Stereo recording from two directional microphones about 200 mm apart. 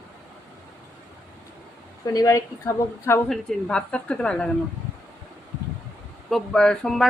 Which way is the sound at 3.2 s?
5° left (ahead or behind).